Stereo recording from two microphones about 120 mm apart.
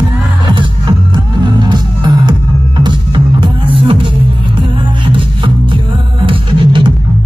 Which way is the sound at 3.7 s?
45° right (ahead or behind).